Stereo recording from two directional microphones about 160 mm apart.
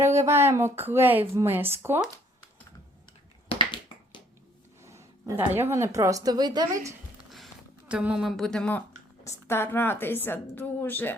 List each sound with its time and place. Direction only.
0.0 s speech: 15° right (ahead or behind)
4.8 s speech: 20° right (ahead or behind)
7.3 s a sound: centre (ahead or behind)
9.2 s a woman's voice: 15° left (ahead or behind)